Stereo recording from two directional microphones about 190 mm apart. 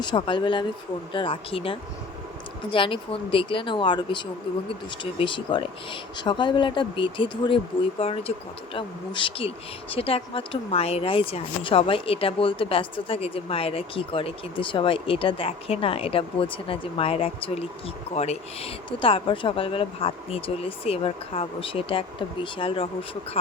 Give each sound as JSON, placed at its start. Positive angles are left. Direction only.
{"t": 0.0, "sound": "speech", "side_deg": 25}